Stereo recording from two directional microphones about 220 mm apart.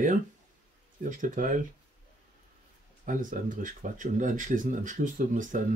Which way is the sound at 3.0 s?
35° right (ahead or behind).